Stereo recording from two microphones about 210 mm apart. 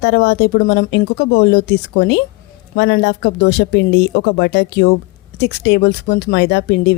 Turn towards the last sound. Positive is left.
turn(degrees=55)  # may be behind; listen again after turning